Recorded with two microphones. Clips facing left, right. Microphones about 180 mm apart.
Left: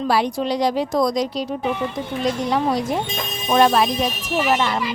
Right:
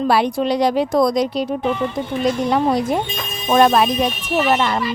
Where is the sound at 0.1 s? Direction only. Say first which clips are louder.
Right 2 dB; 60° right (ahead or behind).